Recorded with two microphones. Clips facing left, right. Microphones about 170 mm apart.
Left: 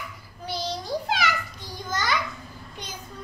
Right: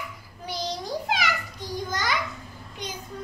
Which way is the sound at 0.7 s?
15° right (ahead or behind).